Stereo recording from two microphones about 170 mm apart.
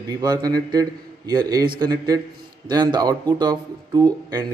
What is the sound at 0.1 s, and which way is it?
A man's voice, 25° right (ahead or behind).